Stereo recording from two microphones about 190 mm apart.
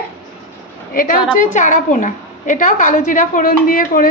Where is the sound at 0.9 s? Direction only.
45° left (ahead or behind).